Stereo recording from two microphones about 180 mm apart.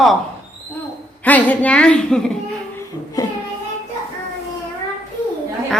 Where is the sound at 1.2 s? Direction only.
10° left (ahead or behind).